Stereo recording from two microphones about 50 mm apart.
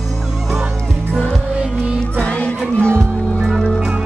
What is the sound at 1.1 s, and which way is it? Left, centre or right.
Music, centre.